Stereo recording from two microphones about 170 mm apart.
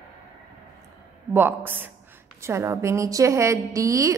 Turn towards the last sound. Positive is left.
turn(degrees=-20)  # may be behind; listen again after turning